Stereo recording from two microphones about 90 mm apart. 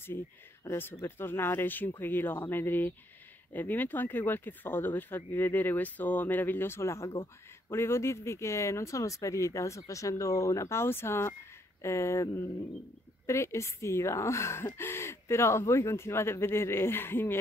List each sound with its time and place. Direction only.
0.7 s speech: 25° left (ahead or behind)